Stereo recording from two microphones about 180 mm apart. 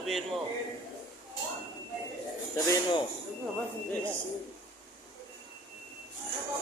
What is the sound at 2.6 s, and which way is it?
Speech, 20° left (ahead or behind).